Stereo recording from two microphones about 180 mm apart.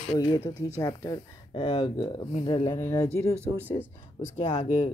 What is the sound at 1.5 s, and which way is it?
Speech, 30° left (ahead or behind).